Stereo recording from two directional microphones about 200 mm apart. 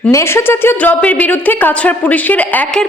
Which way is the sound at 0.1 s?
15° left (ahead or behind).